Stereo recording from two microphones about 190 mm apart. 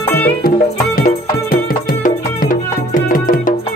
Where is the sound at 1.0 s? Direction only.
50° left (ahead or behind).